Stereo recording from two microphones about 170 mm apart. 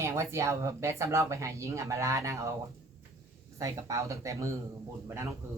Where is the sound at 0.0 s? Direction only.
15° right (ahead or behind).